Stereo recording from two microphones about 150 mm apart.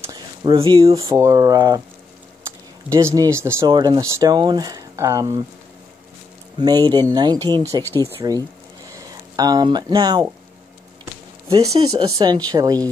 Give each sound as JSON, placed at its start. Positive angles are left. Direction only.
{"t": 0.0, "sound": "a sound", "side_deg": -25}
{"t": 0.6, "sound": "speech", "side_deg": -35}
{"t": 2.9, "sound": "speech", "side_deg": -20}
{"t": 3.6, "sound": "speech", "side_deg": -30}
{"t": 6.6, "sound": "speech", "side_deg": -25}
{"t": 7.8, "sound": "speech", "side_deg": 15}
{"t": 8.2, "sound": "speech", "side_deg": -25}
{"t": 12.2, "sound": "speech", "side_deg": -25}